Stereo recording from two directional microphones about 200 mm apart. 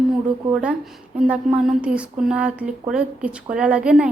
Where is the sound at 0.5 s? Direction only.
5° right (ahead or behind).